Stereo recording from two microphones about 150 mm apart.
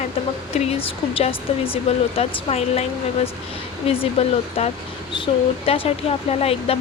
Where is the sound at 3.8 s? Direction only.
40° left (ahead or behind).